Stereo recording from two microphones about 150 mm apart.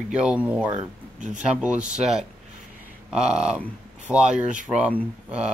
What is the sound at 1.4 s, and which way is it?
Speech, 10° right (ahead or behind).